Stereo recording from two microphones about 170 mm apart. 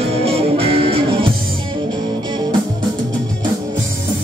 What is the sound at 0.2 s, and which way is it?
Music, 35° right (ahead or behind).